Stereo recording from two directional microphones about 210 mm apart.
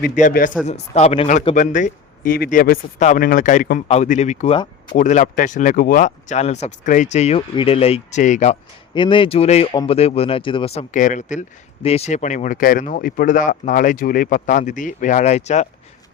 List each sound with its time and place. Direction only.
0.0 s speech: 40° left (ahead or behind)
4.5 s speech: 20° left (ahead or behind)
4.9 s speech: 35° left (ahead or behind)
9.0 s speech: 25° left (ahead or behind)
10.9 s speech: 35° left (ahead or behind)